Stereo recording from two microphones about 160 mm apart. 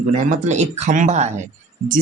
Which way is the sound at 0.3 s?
45° right (ahead or behind).